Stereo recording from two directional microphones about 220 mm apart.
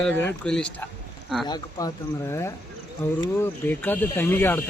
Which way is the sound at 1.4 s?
15° left (ahead or behind).